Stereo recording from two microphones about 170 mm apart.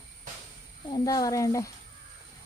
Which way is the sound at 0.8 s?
25° left (ahead or behind).